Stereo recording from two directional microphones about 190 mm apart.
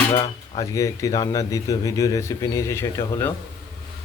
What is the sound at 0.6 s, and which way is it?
Speech, 15° left (ahead or behind).